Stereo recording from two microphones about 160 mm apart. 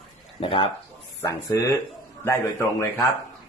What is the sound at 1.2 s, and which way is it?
Speech, 25° left (ahead or behind).